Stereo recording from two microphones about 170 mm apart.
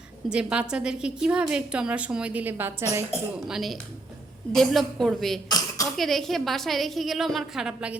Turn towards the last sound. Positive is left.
turn(degrees=-5)  # may be behind; listen again after turning